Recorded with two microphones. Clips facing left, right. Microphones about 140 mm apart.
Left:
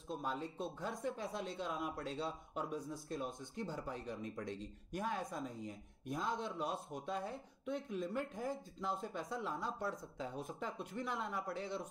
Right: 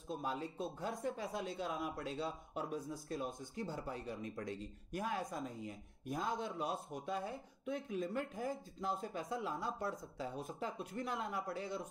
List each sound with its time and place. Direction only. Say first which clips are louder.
0.1 s speech: right 1 dB; 5° right (ahead or behind)